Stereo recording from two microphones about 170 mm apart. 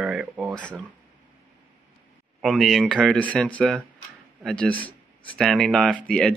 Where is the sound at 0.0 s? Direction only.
5° right (ahead or behind).